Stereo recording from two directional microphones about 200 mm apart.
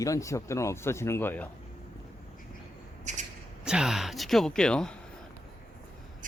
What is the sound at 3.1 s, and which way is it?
Shuffle, 35° right (ahead or behind).